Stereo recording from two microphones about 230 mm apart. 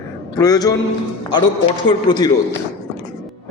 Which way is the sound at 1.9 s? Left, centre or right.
Centre.